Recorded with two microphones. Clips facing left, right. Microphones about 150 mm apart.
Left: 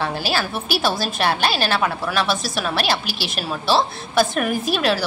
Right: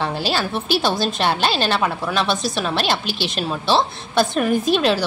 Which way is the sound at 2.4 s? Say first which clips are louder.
Right 2 dB; 20° right (ahead or behind).